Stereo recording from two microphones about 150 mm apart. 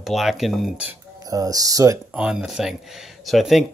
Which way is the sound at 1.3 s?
25° right (ahead or behind).